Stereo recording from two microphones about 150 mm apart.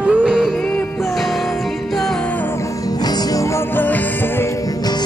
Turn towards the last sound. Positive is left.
turn(degrees=15)  # may be behind; listen again after turning